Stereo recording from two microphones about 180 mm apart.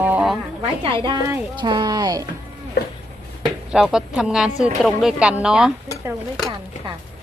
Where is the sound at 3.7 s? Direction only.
5° right (ahead or behind).